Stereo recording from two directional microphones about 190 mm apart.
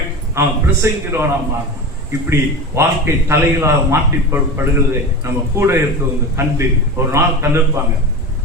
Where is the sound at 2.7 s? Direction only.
15° right (ahead or behind).